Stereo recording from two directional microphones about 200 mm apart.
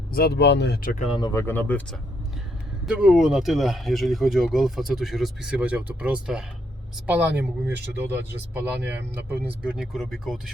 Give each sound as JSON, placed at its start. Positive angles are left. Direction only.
{"t": 0.1, "sound": "speech", "side_deg": 50}
{"t": 1.3, "sound": "speech", "side_deg": 10}
{"t": 2.8, "sound": "speech", "side_deg": -5}